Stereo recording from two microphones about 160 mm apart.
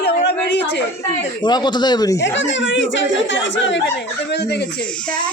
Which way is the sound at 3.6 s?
90° left.